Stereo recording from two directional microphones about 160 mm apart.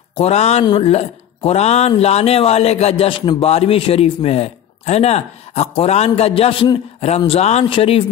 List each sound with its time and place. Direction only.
0.1 s speech: 40° left (ahead or behind)